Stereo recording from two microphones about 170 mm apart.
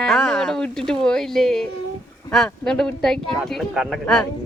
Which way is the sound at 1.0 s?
5° left (ahead or behind).